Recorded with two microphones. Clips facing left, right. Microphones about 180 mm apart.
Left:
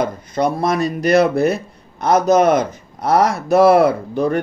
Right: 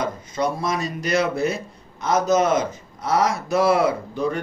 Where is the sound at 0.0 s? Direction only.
60° left (ahead or behind).